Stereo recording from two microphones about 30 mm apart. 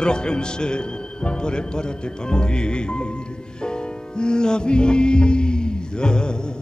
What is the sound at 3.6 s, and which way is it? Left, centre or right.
Music, left.